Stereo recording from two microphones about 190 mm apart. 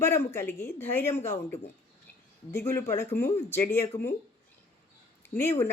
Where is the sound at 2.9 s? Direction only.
15° left (ahead or behind).